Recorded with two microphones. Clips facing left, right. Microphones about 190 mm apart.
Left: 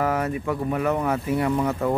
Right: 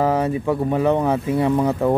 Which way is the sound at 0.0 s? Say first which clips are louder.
Right 5 dB; 25° right (ahead or behind).